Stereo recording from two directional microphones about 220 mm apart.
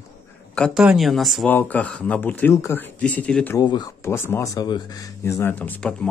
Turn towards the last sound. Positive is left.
turn(degrees=5)  # may be behind; listen again after turning